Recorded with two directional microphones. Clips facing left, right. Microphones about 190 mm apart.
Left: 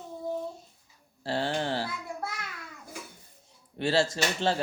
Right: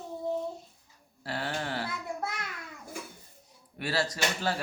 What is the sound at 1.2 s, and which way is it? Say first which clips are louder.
Dog: left 5 dB; 30° left (ahead or behind).